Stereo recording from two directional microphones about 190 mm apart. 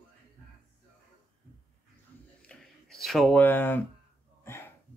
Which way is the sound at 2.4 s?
5° left (ahead or behind).